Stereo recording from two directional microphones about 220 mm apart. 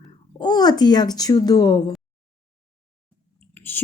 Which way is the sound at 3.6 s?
10° left (ahead or behind).